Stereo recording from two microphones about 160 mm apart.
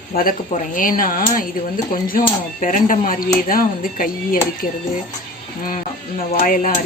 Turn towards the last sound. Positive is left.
turn(degrees=55)  # may be behind; listen again after turning